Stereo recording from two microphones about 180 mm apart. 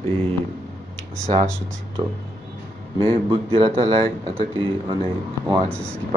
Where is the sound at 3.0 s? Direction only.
30° right (ahead or behind).